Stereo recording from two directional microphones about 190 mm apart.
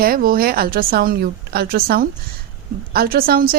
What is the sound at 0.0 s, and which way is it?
Speech, 50° right (ahead or behind).